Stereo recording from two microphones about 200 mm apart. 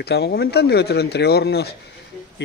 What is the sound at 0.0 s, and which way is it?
Speech, 55° left (ahead or behind).